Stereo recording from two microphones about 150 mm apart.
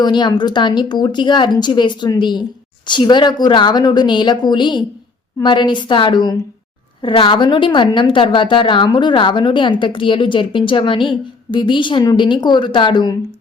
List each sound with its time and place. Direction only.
0.0 s a woman's voice: 30° left (ahead or behind)